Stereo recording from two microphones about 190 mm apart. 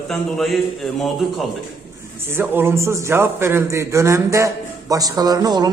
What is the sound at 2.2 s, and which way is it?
A man's voice, 10° right (ahead or behind).